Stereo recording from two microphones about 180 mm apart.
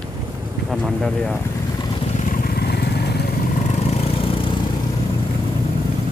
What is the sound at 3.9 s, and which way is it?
Vehicle, 35° left (ahead or behind).